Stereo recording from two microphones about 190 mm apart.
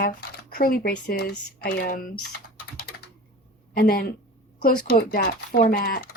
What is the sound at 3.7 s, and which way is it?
A woman's voice, 50° left (ahead or behind).